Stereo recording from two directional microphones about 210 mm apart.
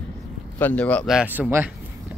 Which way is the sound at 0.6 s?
5° left (ahead or behind).